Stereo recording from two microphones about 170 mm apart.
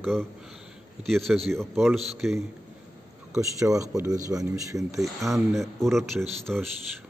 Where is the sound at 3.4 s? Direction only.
20° right (ahead or behind).